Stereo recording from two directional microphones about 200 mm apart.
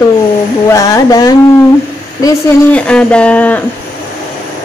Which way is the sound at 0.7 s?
15° left (ahead or behind).